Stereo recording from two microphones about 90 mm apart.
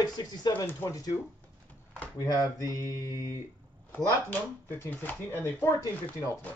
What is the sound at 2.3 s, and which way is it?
Mantra, 40° left (ahead or behind).